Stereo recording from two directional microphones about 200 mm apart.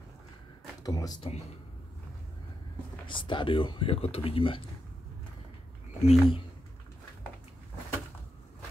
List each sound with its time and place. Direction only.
0.8 s speech: 20° left (ahead or behind)
3.1 s speech: 25° left (ahead or behind)
6.0 s speech: 25° left (ahead or behind)